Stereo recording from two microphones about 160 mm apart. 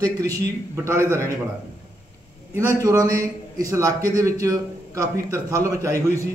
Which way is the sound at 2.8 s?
20° right (ahead or behind).